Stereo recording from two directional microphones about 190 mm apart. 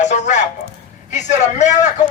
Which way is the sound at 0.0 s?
40° left (ahead or behind).